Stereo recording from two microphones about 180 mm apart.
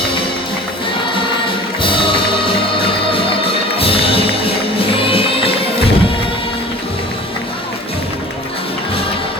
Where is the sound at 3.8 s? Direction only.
30° left (ahead or behind).